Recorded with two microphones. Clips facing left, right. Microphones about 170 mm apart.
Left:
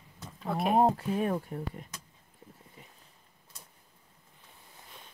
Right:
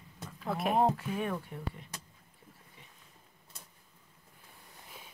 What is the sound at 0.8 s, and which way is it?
Speech, 35° left (ahead or behind).